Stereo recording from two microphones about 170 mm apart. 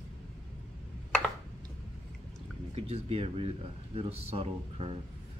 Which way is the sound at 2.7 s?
35° right (ahead or behind).